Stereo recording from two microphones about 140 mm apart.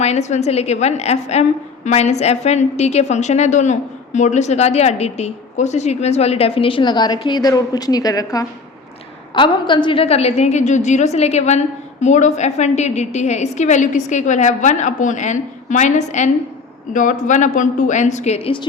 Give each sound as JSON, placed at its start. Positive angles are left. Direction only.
{"t": 0.0, "sound": "a woman's voice", "side_deg": 55}